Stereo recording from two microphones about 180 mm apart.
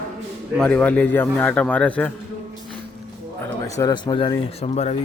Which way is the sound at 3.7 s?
20° left (ahead or behind).